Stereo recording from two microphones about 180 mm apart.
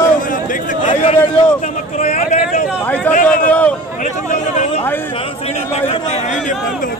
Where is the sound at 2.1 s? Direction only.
45° left (ahead or behind).